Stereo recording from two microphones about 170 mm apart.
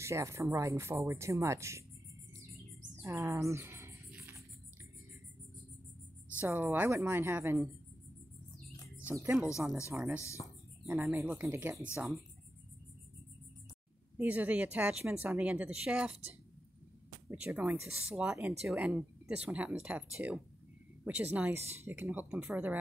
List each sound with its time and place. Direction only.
0.0 s a woman's voice: 15° right (ahead or behind)
3.0 s a sound: 15° right (ahead or behind)
6.4 s a woman's voice: 15° right (ahead or behind)
8.9 s a woman's voice: 10° right (ahead or behind)
14.1 s a woman's voice: 10° right (ahead or behind)